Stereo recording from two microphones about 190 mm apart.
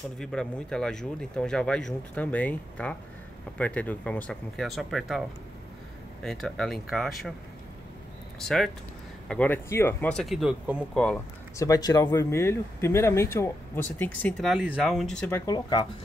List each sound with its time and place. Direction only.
0.2 s speech: 5° left (ahead or behind)
6.2 s speech: centre (ahead or behind)
8.4 s speech: centre (ahead or behind)
11.5 s speech: 20° left (ahead or behind)
15.5 s speech: 25° left (ahead or behind)